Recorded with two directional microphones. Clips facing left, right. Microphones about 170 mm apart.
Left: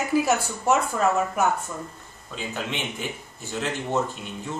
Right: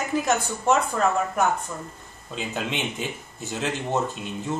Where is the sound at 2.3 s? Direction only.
20° right (ahead or behind).